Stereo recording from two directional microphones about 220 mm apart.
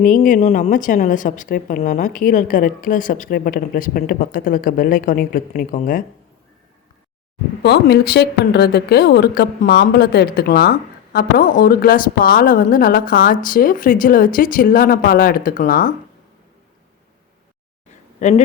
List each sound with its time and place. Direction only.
0.0 s speech: 35° left (ahead or behind)
7.6 s speech: 50° left (ahead or behind)
18.2 s speech: 35° left (ahead or behind)